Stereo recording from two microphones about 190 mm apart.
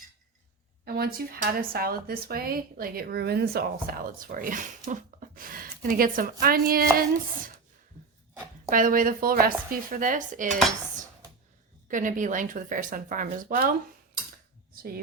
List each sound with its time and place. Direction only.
0.9 s speech: 50° right (ahead or behind)
4.9 s a sound: 45° right (ahead or behind)
6.4 s speech: 50° right (ahead or behind)
8.7 s speech: 45° right (ahead or behind)
11.9 s speech: 45° right (ahead or behind)
14.8 s speech: 50° right (ahead or behind)